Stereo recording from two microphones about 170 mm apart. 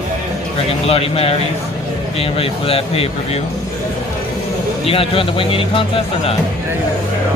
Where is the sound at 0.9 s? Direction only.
35° left (ahead or behind).